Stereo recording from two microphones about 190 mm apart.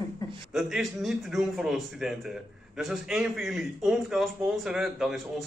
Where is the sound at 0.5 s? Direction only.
Centre (ahead or behind).